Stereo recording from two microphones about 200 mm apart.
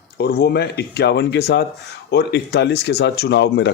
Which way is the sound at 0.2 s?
50° left (ahead or behind).